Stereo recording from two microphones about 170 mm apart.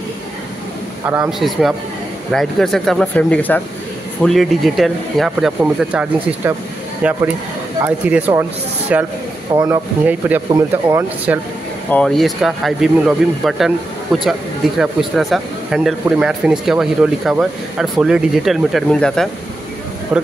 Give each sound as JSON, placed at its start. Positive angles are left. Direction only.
{"t": 1.0, "sound": "speech", "side_deg": -15}
{"t": 1.4, "sound": "speech", "side_deg": 0}
{"t": 7.8, "sound": "speech", "side_deg": -10}
{"t": 9.5, "sound": "speech", "side_deg": -20}
{"t": 10.0, "sound": "speech", "side_deg": -10}
{"t": 11.9, "sound": "speech", "side_deg": 5}